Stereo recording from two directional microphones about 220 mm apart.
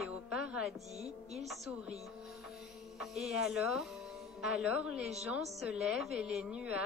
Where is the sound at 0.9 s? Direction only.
30° right (ahead or behind).